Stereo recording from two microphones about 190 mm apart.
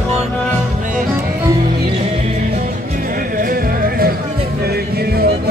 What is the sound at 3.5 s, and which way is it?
Music, 50° right (ahead or behind).